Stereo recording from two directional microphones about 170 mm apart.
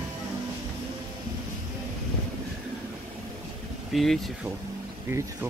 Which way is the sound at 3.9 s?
Centre (ahead or behind).